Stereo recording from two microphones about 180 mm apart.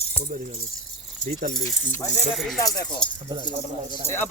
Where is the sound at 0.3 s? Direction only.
50° right (ahead or behind).